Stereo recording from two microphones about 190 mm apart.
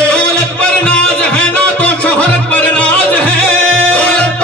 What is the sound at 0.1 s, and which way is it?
Music, 5° left (ahead or behind).